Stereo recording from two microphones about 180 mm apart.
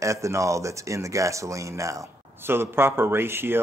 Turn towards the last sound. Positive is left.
turn(degrees=-15)  # may be behind; listen again after turning